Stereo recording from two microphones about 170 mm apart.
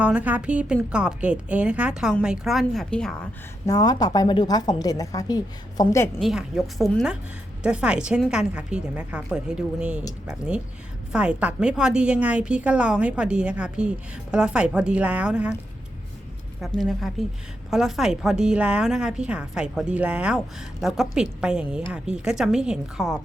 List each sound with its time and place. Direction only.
0.0 s a woman's voice: 10° right (ahead or behind)
3.7 s a woman's voice: 20° left (ahead or behind)
6.1 s a woman's voice: centre (ahead or behind)
16.6 s a woman's voice: centre (ahead or behind)